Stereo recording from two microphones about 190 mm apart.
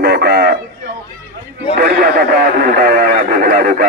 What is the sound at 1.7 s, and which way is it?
Radio, 50° right (ahead or behind).